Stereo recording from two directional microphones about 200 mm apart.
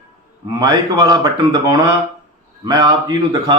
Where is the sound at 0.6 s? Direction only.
20° right (ahead or behind).